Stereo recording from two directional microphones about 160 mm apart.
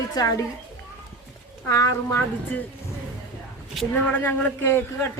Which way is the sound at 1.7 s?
20° left (ahead or behind).